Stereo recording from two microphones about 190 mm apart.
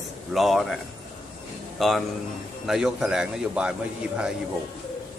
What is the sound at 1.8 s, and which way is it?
A man's voice, centre (ahead or behind).